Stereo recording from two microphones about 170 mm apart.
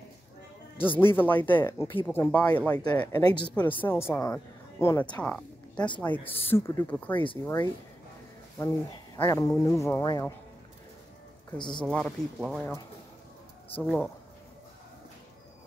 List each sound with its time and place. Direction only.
0.7 s a woman's voice: 10° left (ahead or behind)
11.5 s speech: 25° left (ahead or behind)
11.8 s speech: 5° left (ahead or behind)
13.8 s speech: 5° left (ahead or behind)